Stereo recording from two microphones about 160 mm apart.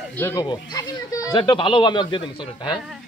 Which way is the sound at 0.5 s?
25° left (ahead or behind).